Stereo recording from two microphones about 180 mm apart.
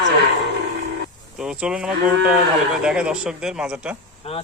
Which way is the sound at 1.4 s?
5° right (ahead or behind).